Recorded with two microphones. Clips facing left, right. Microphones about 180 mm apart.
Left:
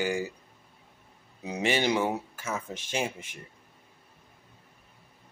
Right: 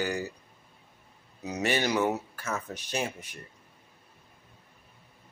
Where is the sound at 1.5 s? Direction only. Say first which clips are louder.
Left 1 dB; 15° left (ahead or behind).